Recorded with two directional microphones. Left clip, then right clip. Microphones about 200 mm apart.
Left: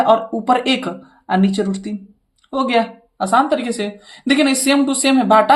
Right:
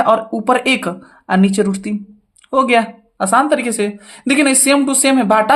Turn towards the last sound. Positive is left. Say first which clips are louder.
# even
turn(degrees=-30)  # may be behind; listen again after turning